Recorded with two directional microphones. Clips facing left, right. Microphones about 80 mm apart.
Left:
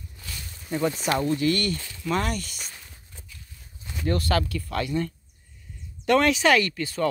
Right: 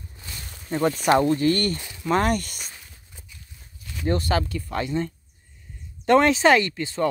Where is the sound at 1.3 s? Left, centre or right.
Right.